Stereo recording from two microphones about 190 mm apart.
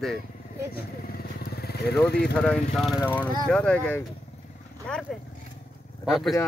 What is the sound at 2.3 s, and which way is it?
Speech, 5° left (ahead or behind).